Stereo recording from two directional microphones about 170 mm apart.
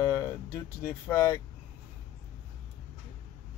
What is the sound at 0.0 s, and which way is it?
Speech, 15° left (ahead or behind).